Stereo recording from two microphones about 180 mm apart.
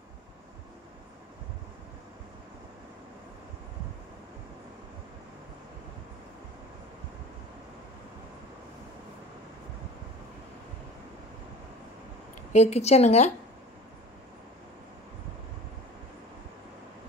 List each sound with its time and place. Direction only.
12.5 s a woman's voice: 35° left (ahead or behind)